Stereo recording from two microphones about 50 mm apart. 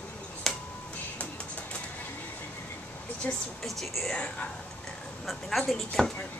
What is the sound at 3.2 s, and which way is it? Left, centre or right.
Speech, left.